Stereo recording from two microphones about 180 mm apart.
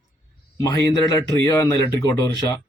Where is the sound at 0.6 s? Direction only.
20° left (ahead or behind).